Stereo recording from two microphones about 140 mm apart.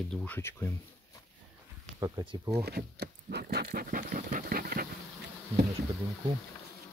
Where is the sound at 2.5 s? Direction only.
90° right.